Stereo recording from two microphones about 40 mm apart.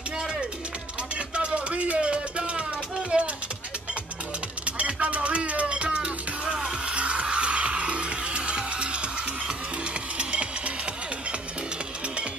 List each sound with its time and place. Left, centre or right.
1.3 s music: right
3.1 s a sound: right
4.6 s music: right
10.1 s music: right